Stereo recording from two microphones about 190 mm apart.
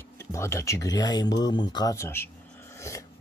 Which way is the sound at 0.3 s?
15° left (ahead or behind).